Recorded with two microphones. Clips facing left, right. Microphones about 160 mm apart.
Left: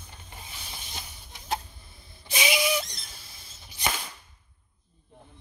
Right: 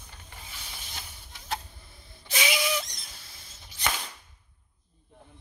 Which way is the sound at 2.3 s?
15° left (ahead or behind).